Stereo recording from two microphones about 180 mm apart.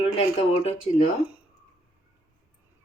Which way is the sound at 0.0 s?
35° left (ahead or behind).